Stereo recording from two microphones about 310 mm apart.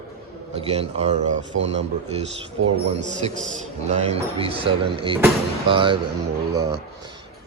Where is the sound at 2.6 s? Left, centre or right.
Right.